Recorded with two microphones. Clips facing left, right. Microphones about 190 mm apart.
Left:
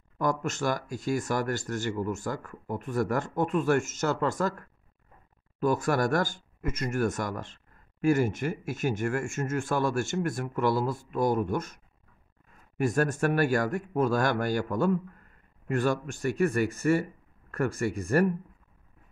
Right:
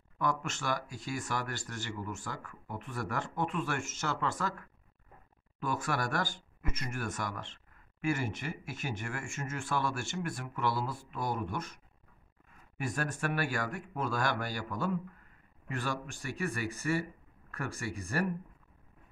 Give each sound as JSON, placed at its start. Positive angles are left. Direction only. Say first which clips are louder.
{"t": 0.2, "sound": "speech", "louder": "left 6 dB", "side_deg": 40}